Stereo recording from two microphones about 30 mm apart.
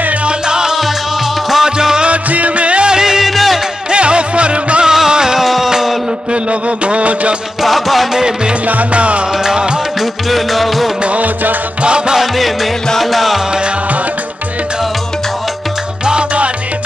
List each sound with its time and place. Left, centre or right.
0.5 s music: right
2.0 s music: right
2.9 s music: right
3.3 s music: centre
3.9 s music: right
4.8 s music: right
5.4 s music: centre
6.9 s music: right
7.6 s music: centre
8.9 s music: right
9.4 s music: right
10.3 s music: centre
13.0 s music: centre